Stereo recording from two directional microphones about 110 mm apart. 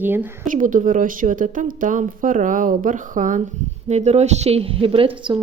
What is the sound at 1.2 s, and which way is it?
Speech, 90° right.